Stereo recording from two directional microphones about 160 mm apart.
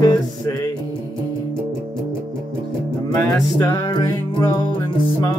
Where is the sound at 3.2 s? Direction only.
20° left (ahead or behind).